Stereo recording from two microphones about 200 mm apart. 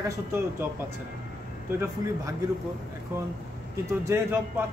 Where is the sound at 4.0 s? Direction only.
10° right (ahead or behind).